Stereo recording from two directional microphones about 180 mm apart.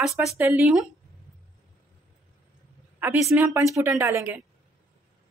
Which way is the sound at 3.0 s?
15° right (ahead or behind).